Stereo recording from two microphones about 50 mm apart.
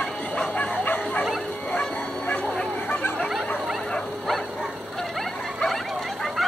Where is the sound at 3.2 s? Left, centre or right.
Centre.